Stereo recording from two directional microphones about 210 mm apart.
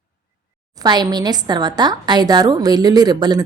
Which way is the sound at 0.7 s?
20° right (ahead or behind).